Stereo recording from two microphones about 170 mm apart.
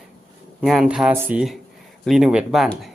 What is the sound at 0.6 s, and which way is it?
Speech, centre (ahead or behind).